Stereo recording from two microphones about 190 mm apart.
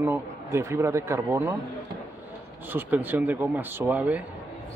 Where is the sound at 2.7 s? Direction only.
10° right (ahead or behind).